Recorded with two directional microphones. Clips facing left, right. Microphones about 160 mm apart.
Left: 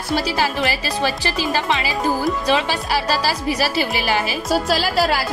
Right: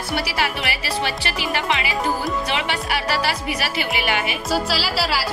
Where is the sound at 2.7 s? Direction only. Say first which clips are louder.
Left 3 dB; 30° left (ahead or behind).